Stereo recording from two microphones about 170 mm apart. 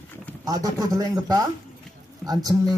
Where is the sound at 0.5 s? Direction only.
20° right (ahead or behind).